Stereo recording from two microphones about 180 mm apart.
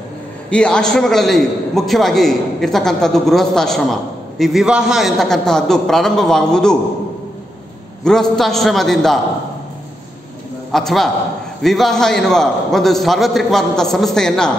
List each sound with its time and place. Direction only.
0.5 s a man's voice: 5° left (ahead or behind)
8.0 s a man's voice: 5° left (ahead or behind)
10.7 s a man's voice: centre (ahead or behind)